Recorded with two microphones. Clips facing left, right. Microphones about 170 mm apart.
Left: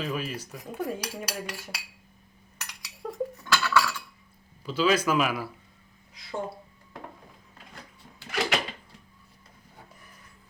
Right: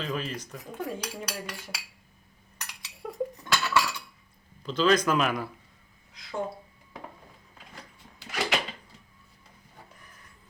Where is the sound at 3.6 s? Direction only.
20° right (ahead or behind).